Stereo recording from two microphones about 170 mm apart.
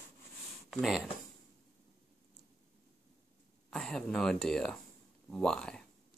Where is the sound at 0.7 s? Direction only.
Centre (ahead or behind).